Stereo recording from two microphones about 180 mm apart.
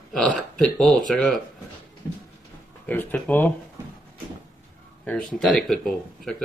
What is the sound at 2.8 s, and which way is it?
Speech, 10° left (ahead or behind).